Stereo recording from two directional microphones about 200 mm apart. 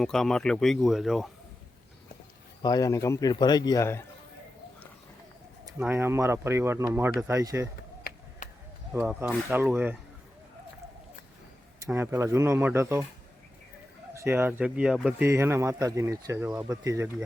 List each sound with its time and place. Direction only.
0.0 s speech: centre (ahead or behind)
2.6 s a man's voice: 20° left (ahead or behind)
5.8 s speech: 10° right (ahead or behind)
7.1 s speech: 5° right (ahead or behind)
7.3 s speech: 15° right (ahead or behind)
8.4 s a sound: 40° left (ahead or behind)
8.9 s speech: 5° right (ahead or behind)
11.9 s speech: 10° right (ahead or behind)
14.1 s speech: 10° right (ahead or behind)